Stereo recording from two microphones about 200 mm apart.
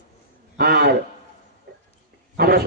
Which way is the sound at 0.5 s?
50° right (ahead or behind).